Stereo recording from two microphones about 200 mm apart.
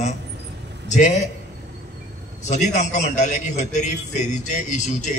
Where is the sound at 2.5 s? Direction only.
35° left (ahead or behind).